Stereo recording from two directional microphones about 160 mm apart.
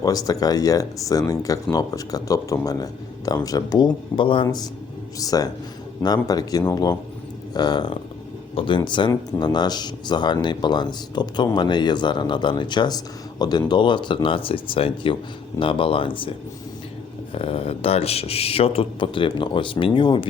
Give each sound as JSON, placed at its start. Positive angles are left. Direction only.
{"t": 0.0, "sound": "speech", "side_deg": 25}
{"t": 17.3, "sound": "speech", "side_deg": 35}